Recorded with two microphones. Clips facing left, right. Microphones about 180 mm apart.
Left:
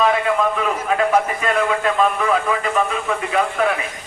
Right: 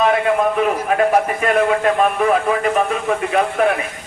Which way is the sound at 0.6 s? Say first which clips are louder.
Right 3 dB; 50° right (ahead or behind).